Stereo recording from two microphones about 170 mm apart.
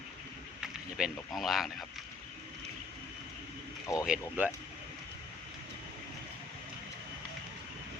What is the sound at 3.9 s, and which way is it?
Speech, 20° left (ahead or behind).